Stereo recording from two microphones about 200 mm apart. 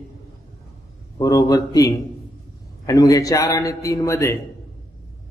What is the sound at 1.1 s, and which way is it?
A man's voice, 20° left (ahead or behind).